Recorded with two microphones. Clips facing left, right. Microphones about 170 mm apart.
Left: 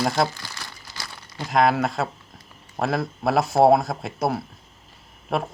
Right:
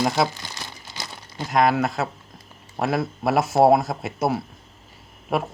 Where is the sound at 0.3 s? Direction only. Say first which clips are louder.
Right 2 dB; 20° right (ahead or behind).